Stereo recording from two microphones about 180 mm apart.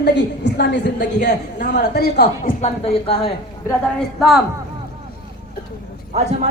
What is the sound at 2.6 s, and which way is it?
Speech, 35° left (ahead or behind).